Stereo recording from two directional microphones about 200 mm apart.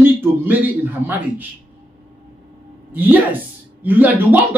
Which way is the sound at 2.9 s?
10° right (ahead or behind).